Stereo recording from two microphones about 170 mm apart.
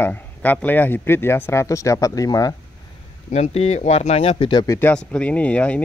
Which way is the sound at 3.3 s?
40° left (ahead or behind).